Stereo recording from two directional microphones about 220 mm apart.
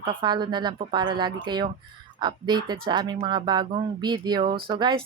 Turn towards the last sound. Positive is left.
turn(degrees=-20)  # may be behind; listen again after turning